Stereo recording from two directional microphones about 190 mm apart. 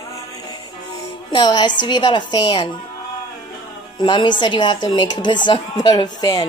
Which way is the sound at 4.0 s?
25° left (ahead or behind).